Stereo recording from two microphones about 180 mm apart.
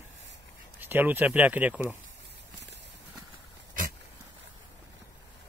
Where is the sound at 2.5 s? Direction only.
75° right (ahead or behind).